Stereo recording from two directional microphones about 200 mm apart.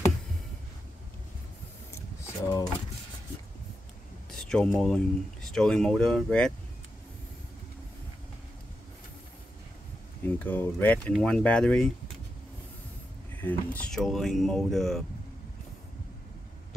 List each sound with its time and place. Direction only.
2.4 s speech: 15° left (ahead or behind)
4.3 s speech: 5° left (ahead or behind)
10.2 s speech: 10° left (ahead or behind)
13.4 s speech: 10° left (ahead or behind)